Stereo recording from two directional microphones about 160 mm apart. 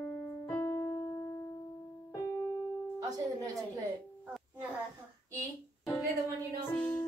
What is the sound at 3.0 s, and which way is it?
Music, 25° right (ahead or behind).